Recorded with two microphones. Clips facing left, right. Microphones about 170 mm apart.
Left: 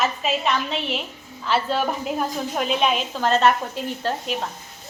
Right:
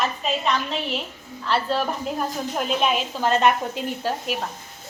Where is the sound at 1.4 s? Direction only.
Centre (ahead or behind).